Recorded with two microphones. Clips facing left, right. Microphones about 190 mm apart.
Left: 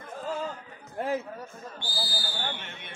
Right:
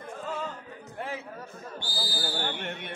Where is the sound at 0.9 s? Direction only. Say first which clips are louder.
Left 7 dB; 40° left (ahead or behind).